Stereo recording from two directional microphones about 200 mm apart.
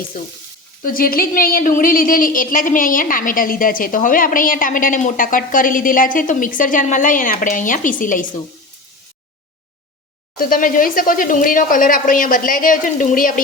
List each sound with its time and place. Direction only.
0.8 s a woman's voice: 45° left (ahead or behind)
10.3 s a woman's voice: 45° left (ahead or behind)